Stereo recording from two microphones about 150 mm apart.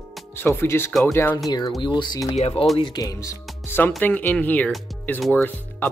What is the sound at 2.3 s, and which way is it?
Speech, 40° left (ahead or behind).